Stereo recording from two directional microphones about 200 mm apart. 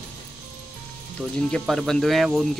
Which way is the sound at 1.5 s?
Centre (ahead or behind).